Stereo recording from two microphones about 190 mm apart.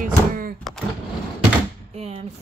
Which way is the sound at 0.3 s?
50° right (ahead or behind).